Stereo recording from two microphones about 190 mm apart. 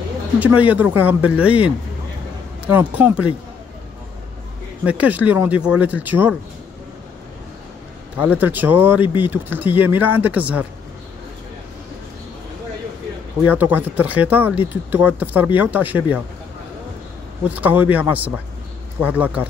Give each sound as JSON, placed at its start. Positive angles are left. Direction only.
{"t": 0.4, "sound": "speech", "side_deg": -10}
{"t": 4.8, "sound": "speech", "side_deg": -10}
{"t": 8.4, "sound": "speech", "side_deg": -10}
{"t": 13.5, "sound": "speech", "side_deg": -10}
{"t": 17.5, "sound": "speech", "side_deg": -10}